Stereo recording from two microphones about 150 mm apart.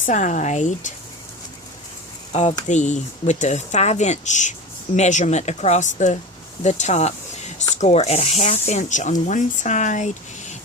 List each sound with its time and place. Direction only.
0.0 s speech: 55° left (ahead or behind)
2.3 s speech: 45° left (ahead or behind)